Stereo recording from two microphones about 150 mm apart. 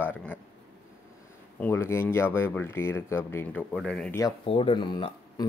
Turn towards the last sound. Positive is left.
turn(degrees=30)  # may be behind; listen again after turning